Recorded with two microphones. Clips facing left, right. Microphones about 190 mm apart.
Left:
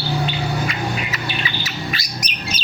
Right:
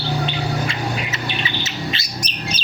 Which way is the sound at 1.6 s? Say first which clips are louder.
Right 1 dB; 25° right (ahead or behind).